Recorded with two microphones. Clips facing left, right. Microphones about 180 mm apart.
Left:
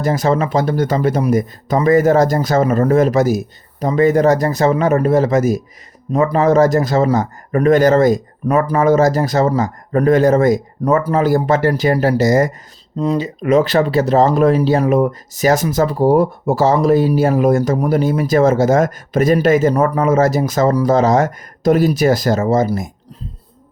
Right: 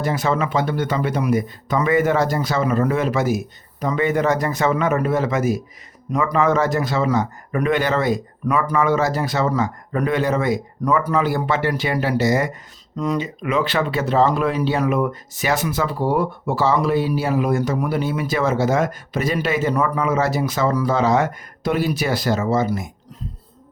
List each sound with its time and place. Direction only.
0.0 s speech: 40° left (ahead or behind)